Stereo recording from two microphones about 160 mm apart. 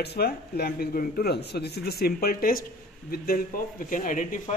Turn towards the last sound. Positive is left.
turn(degrees=55)  # may be behind; listen again after turning